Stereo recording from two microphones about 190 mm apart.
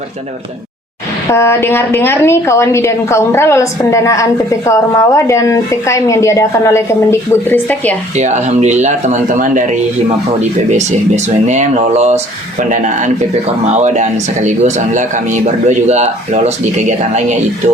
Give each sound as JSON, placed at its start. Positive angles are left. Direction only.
{"t": 1.3, "sound": "a woman's voice", "side_deg": 15}
{"t": 8.1, "sound": "speech", "side_deg": -40}
{"t": 10.7, "sound": "speech", "side_deg": -35}